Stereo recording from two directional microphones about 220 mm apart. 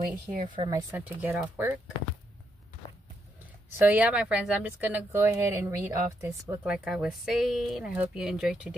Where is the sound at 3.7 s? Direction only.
10° right (ahead or behind).